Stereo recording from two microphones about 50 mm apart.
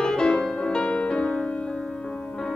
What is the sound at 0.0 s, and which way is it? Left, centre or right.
Music, centre.